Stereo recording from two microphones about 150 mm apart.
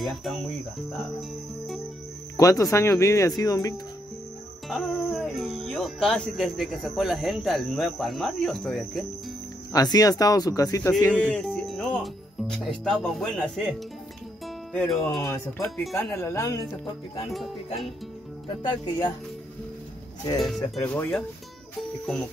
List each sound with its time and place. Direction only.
0.0 s speech: centre (ahead or behind)
2.3 s speech: 20° left (ahead or behind)
4.6 s speech: centre (ahead or behind)
9.7 s speech: 25° left (ahead or behind)
11.1 s speech: 5° left (ahead or behind)
14.9 s speech: centre (ahead or behind)
15.9 s speech: 15° left (ahead or behind)
18.6 s speech: 30° left (ahead or behind)
20.3 s speech: centre (ahead or behind)
20.8 s speech: 10° left (ahead or behind)